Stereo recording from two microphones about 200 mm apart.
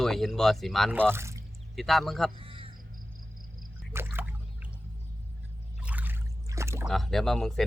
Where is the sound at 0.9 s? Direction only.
10° right (ahead or behind).